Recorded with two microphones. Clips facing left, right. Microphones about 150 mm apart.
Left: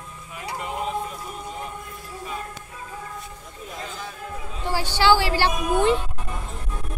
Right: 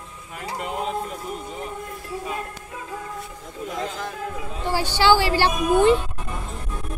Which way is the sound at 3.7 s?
90° right.